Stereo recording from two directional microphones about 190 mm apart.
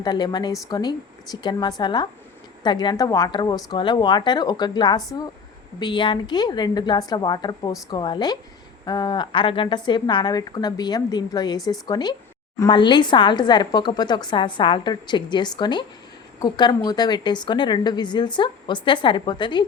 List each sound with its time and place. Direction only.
0.0 s a woman's voice: 20° left (ahead or behind)